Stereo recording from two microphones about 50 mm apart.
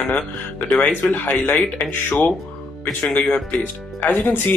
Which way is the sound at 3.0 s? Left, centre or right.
Centre.